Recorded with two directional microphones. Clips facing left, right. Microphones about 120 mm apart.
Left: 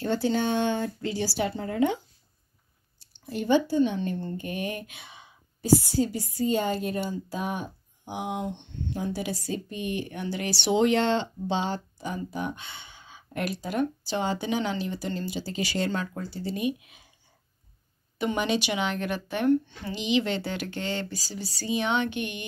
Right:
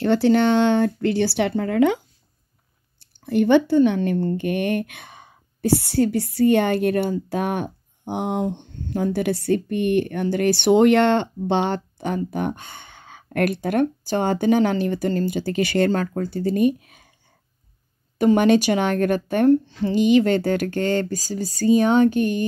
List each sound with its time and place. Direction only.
0.0 s speech: 70° right (ahead or behind)
3.3 s speech: 65° right (ahead or behind); by 17.1 s 50° right (ahead or behind)
18.1 s speech: 45° right (ahead or behind)
19.6 s speech: 30° right (ahead or behind)
19.9 s speech: 50° right (ahead or behind)